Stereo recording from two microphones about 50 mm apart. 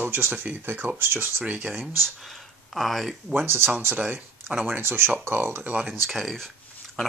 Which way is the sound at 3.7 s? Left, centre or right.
Right.